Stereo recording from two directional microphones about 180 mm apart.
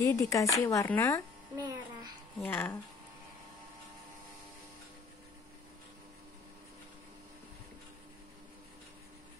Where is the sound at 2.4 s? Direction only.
10° left (ahead or behind).